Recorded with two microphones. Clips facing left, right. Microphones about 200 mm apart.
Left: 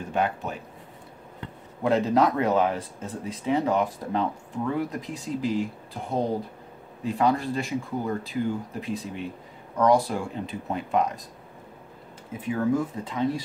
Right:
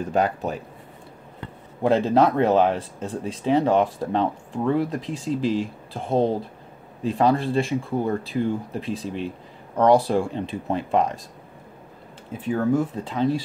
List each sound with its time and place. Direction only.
0.1 s speech: 35° right (ahead or behind)
1.8 s speech: 30° right (ahead or behind)
12.4 s speech: 30° right (ahead or behind)